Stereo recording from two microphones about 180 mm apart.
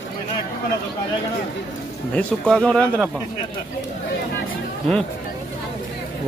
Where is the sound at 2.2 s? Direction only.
5° left (ahead or behind).